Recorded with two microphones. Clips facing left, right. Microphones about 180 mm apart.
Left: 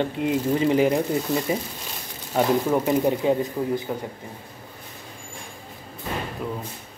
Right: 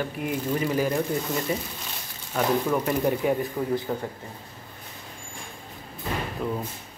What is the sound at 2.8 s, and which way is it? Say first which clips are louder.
Speech: left 3 dB; 20° left (ahead or behind).